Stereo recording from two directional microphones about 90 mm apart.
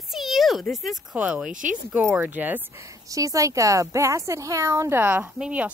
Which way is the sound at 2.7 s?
35° right (ahead or behind).